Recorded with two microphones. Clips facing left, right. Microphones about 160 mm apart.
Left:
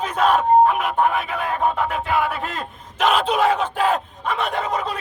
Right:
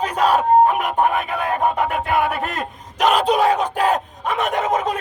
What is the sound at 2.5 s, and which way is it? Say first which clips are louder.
Speech: right 2 dB; 40° right (ahead or behind).